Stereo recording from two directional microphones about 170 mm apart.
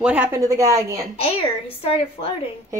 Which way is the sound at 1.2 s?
35° left (ahead or behind).